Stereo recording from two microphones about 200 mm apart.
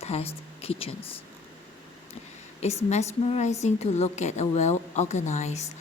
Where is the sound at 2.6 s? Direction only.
30° left (ahead or behind).